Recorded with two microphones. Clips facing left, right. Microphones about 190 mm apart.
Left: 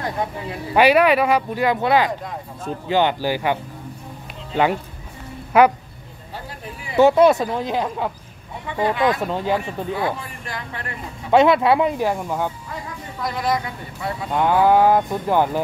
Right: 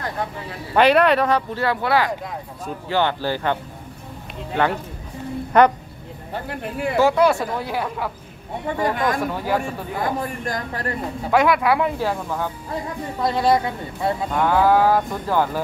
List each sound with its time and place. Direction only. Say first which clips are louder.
0.0 s speech: left 2 dB; 20° left (ahead or behind)
5.5 s speech: left 1 dB; 5° left (ahead or behind)
6.3 s speech: right 7 dB; 65° right (ahead or behind)
7.0 s speech: left 4 dB; 20° left (ahead or behind)
8.8 s speech: left 3 dB; 45° right (ahead or behind)
9.3 s speech: left 1 dB; 20° left (ahead or behind)
9.9 s a man's voice: right 5 dB; 45° right (ahead or behind)
11.3 s speech: left 3 dB; 25° left (ahead or behind)
13.2 s speech: right 4 dB; 30° right (ahead or behind)
14.3 s speech: left 2 dB; 20° left (ahead or behind)